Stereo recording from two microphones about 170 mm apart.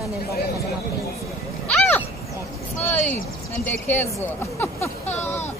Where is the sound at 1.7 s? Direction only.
10° left (ahead or behind).